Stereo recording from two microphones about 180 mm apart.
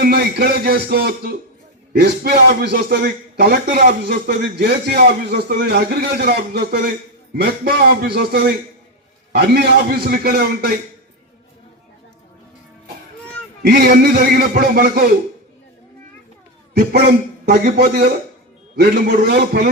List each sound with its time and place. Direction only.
0.0 s a man's voice: 60° right (ahead or behind)
13.6 s a man's voice: 60° right (ahead or behind)
16.7 s a man's voice: 60° right (ahead or behind)